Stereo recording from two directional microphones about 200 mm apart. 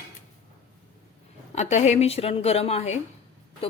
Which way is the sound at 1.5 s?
35° left (ahead or behind).